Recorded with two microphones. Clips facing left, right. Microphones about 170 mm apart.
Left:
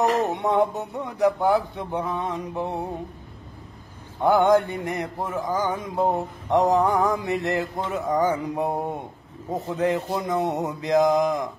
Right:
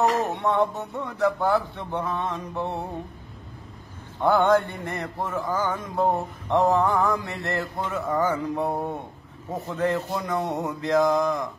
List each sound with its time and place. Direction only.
0.3 s mantra: 20° left (ahead or behind)
4.2 s mantra: 15° left (ahead or behind)